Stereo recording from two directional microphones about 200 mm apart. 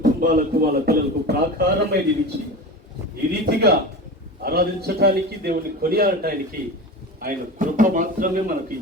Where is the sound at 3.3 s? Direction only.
55° right (ahead or behind).